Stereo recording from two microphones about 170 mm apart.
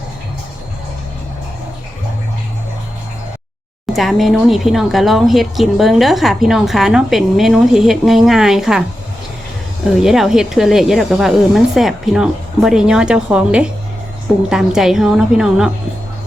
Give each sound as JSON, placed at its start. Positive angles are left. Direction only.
{"t": 3.9, "sound": "speech", "side_deg": 0}
{"t": 9.9, "sound": "speech", "side_deg": 0}